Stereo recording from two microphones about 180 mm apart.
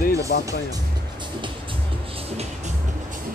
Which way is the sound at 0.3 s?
75° left (ahead or behind).